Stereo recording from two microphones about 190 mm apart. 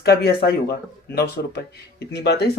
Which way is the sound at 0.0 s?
55° left (ahead or behind).